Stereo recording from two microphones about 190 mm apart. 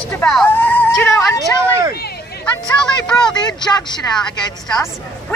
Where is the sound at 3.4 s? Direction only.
20° left (ahead or behind).